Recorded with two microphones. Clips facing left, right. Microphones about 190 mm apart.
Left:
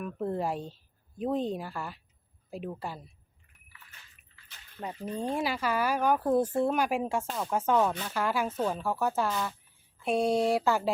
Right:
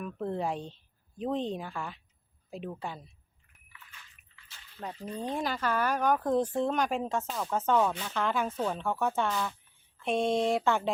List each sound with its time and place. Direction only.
0.0 s speech: 5° left (ahead or behind)
4.3 s bathtub: 40° left (ahead or behind)
4.8 s speech: 10° left (ahead or behind)